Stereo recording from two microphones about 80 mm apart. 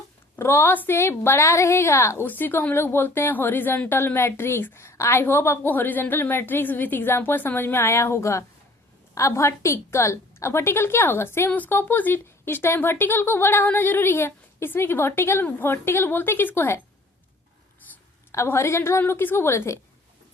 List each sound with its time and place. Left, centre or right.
0.3 s a woman's voice: left
2.2 s a woman's voice: left
18.3 s a woman's voice: left